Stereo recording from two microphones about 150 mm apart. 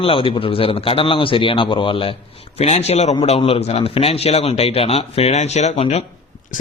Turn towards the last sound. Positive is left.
turn(degrees=45)  # may be behind; listen again after turning